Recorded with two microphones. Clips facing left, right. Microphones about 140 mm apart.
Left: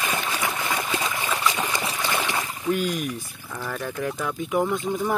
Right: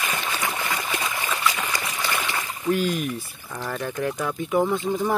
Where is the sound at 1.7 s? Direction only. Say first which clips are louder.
Left 1 dB; 25° left (ahead or behind).